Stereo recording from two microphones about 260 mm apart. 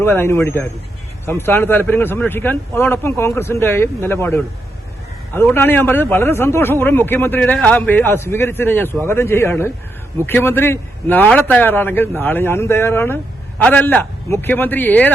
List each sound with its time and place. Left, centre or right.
0.0 s a man's voice: centre